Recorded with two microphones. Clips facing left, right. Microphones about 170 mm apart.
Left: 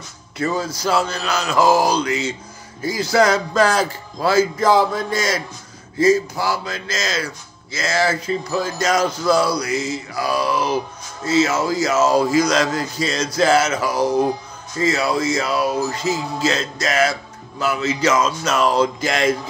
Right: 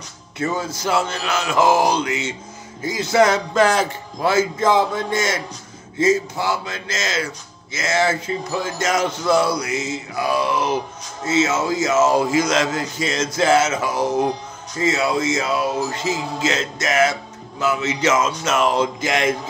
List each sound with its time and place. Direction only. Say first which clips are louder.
0.4 s a man's voice: left 1 dB; 20° right (ahead or behind)